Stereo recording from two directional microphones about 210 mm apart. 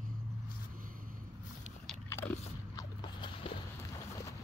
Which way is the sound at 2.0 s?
10° left (ahead or behind).